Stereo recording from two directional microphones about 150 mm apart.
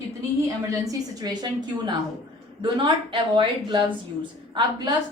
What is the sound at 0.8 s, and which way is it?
A woman's voice, 25° right (ahead or behind).